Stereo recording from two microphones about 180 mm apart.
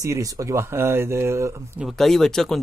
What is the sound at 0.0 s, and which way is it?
Speech, 20° right (ahead or behind).